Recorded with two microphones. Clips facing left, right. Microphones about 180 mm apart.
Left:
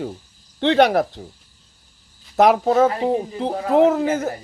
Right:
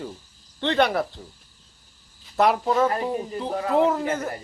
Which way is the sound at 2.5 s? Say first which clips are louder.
Left 5 dB; 50° left (ahead or behind).